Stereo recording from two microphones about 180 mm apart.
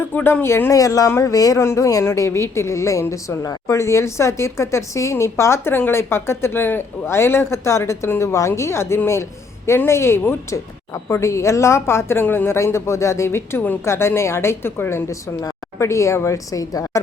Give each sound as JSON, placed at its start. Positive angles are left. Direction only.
{"t": 0.1, "sound": "speech", "side_deg": 10}